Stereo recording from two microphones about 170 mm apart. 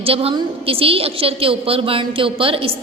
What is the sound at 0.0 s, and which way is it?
A woman's voice, 35° right (ahead or behind).